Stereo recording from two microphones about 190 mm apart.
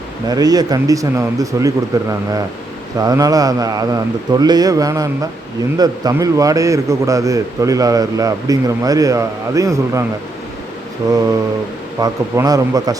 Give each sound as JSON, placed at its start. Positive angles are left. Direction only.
{"t": 0.3, "sound": "a man's voice", "side_deg": -20}
{"t": 11.0, "sound": "a man's voice", "side_deg": -20}